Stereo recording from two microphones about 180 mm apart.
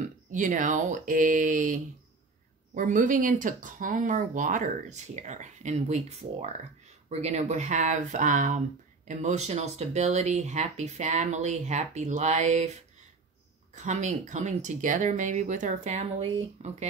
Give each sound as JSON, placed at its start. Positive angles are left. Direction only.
{"t": 0.3, "sound": "speech", "side_deg": -45}
{"t": 13.7, "sound": "speech", "side_deg": -40}